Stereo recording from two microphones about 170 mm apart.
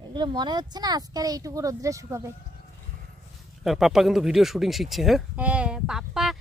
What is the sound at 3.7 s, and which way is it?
Speech, centre (ahead or behind).